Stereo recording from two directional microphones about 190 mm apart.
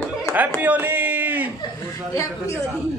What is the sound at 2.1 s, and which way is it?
Speech, 15° left (ahead or behind).